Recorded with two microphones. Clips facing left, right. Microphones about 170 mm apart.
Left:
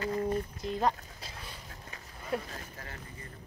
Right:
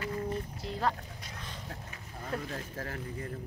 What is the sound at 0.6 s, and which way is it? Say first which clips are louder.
Speech: left 2 dB; 20° left (ahead or behind).